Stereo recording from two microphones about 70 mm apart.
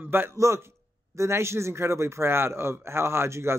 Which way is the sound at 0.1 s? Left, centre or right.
Right.